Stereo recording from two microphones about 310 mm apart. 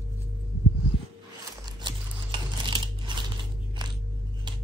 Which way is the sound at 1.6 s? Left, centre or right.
Centre.